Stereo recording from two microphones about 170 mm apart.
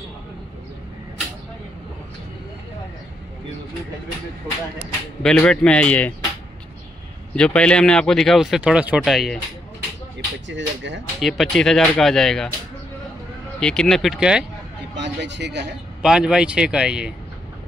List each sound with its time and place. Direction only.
5.2 s a man's voice: 5° left (ahead or behind)
7.3 s speech: 5° left (ahead or behind)
10.5 s speech: 90° right
11.1 s speech: centre (ahead or behind)
13.6 s speech: 5° left (ahead or behind)
15.0 s a man's voice: 90° right
16.0 s speech: 5° right (ahead or behind)